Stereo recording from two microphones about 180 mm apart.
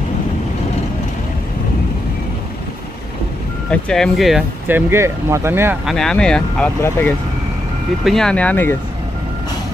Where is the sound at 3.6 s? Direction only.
5° left (ahead or behind).